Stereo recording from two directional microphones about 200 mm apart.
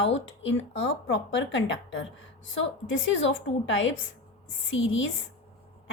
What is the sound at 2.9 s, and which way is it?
A woman's voice, 70° left (ahead or behind).